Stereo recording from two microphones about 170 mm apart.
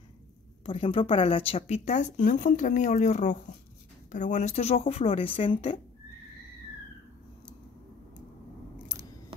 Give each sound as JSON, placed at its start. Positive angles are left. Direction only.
{"t": 0.7, "sound": "speech", "side_deg": 30}